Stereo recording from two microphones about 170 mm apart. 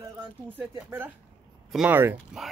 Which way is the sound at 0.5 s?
10° right (ahead or behind).